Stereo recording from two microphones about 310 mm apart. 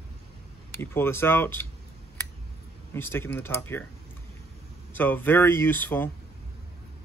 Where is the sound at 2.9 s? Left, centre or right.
Centre.